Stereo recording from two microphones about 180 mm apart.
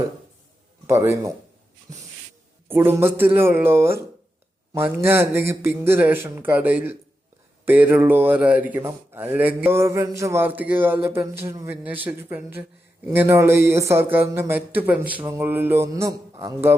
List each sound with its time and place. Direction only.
0.9 s speech: 15° right (ahead or behind)
1.9 s a sound: 20° right (ahead or behind)
2.6 s speech: 10° right (ahead or behind)